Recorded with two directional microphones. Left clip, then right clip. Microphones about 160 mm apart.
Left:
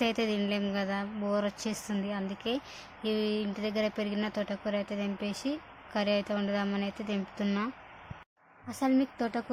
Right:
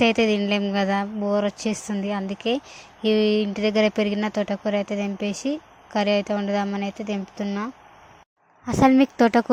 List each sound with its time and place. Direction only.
0.0 s speech: 40° right (ahead or behind)
7.4 s speech: 15° right (ahead or behind)
8.6 s a woman's voice: 55° right (ahead or behind)